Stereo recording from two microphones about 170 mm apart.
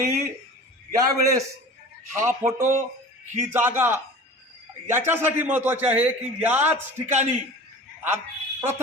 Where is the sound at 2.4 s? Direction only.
15° right (ahead or behind).